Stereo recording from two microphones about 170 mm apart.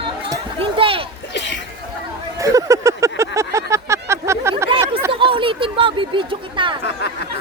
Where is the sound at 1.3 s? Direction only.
90° left.